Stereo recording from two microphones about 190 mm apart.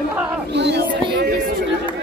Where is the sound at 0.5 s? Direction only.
65° right (ahead or behind).